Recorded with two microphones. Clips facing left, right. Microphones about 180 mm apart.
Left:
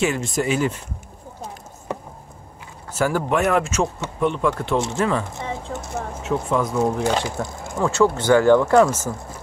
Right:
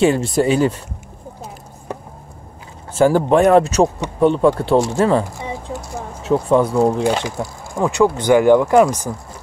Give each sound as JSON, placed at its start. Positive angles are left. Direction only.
{"t": 0.0, "sound": "speech", "side_deg": -35}
{"t": 2.9, "sound": "speech", "side_deg": -30}
{"t": 5.4, "sound": "a sound", "side_deg": -15}
{"t": 6.2, "sound": "speech", "side_deg": -30}
{"t": 7.0, "sound": "speech", "side_deg": -15}